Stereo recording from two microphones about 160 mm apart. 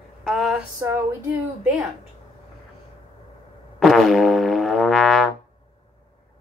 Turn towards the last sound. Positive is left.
turn(degrees=0)  # may be behind; listen again after turning